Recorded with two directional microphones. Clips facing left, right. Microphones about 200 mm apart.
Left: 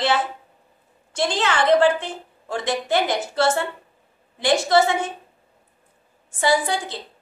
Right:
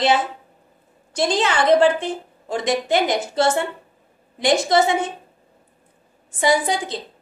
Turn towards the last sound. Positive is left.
turn(degrees=-20)  # may be behind; listen again after turning